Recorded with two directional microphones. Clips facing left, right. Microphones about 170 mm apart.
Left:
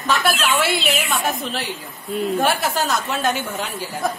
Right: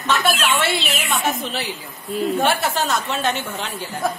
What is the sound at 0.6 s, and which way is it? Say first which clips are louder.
A woman's voice: left 2 dB; centre (ahead or behind).